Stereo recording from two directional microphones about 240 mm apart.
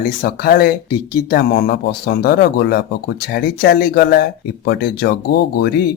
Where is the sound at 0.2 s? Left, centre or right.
Left.